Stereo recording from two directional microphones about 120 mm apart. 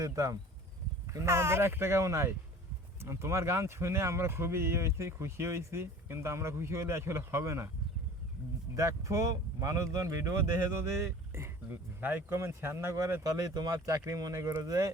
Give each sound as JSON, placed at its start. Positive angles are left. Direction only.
{"t": 0.0, "sound": "speech", "side_deg": -30}
{"t": 8.7, "sound": "speech", "side_deg": -25}